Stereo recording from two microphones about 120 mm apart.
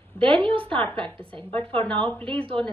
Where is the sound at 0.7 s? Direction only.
15° left (ahead or behind).